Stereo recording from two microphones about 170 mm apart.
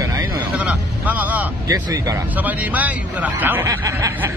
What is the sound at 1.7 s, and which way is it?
Speech, 20° right (ahead or behind).